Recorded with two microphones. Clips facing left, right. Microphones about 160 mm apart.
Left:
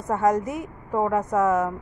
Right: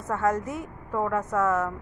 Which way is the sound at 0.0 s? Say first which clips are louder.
Left 4 dB; 15° left (ahead or behind).